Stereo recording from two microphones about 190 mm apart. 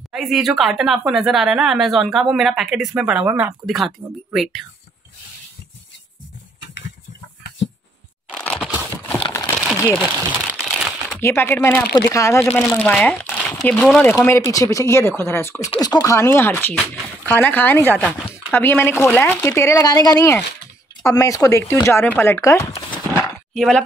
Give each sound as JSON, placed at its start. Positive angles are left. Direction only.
{"t": 0.1, "sound": "speech", "side_deg": 0}
{"t": 8.3, "sound": "crushing", "side_deg": 5}
{"t": 9.3, "sound": "crumpling", "side_deg": 10}
{"t": 9.8, "sound": "speech", "side_deg": 5}
{"t": 14.1, "sound": "speech", "side_deg": 15}
{"t": 16.7, "sound": "speech", "side_deg": 0}
{"t": 22.7, "sound": "speech", "side_deg": 30}
{"t": 23.5, "sound": "speech", "side_deg": 0}